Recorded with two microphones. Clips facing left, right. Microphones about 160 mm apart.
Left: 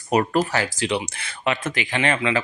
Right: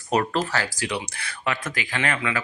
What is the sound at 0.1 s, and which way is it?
Speech, 15° left (ahead or behind).